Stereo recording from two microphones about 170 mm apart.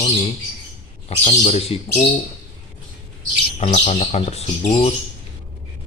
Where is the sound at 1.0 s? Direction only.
40° left (ahead or behind).